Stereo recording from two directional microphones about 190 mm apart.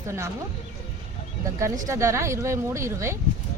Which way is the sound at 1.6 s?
15° right (ahead or behind).